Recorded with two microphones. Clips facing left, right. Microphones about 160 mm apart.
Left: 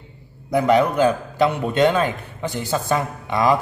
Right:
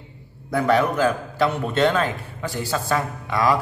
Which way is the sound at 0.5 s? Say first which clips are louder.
Left 3 dB; 15° left (ahead or behind).